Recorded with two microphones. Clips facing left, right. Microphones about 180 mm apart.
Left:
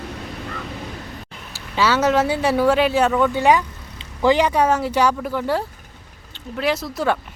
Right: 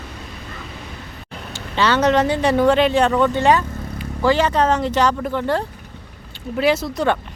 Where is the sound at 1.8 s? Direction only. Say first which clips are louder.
Right 1 dB; 5° left (ahead or behind).